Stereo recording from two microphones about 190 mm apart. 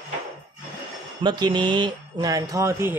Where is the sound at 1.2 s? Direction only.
25° right (ahead or behind).